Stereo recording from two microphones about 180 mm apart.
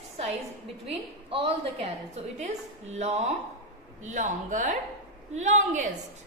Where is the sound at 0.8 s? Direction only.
30° right (ahead or behind).